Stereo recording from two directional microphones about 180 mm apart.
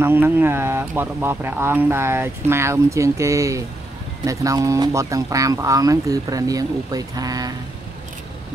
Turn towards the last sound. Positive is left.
turn(degrees=-20)  # may be behind; listen again after turning